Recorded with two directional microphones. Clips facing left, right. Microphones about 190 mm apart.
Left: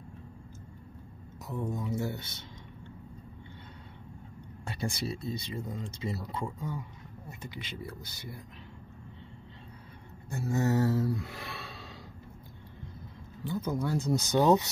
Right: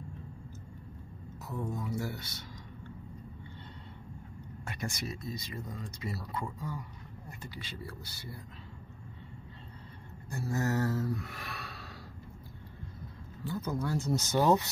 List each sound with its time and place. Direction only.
1.5 s speech: 20° left (ahead or behind)
4.9 s speech: 30° left (ahead or behind)
10.3 s speech: 25° left (ahead or behind)
13.4 s speech: 20° left (ahead or behind)